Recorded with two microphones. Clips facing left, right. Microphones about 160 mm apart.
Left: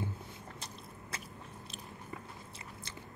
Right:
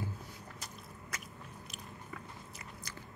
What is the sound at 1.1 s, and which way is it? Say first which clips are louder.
Biting: left 1 dB; 30° left (ahead or behind).